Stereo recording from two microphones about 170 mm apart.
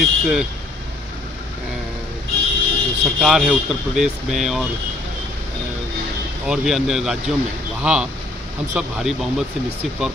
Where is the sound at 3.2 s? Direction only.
Centre (ahead or behind).